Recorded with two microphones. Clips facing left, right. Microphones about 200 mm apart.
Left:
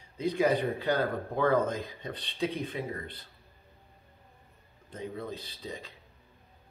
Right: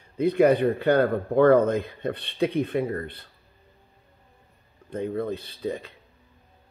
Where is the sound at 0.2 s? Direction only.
60° right (ahead or behind).